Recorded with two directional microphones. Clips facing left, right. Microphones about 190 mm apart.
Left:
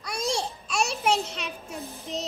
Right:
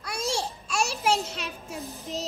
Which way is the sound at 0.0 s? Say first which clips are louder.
Left 1 dB; 5° right (ahead or behind).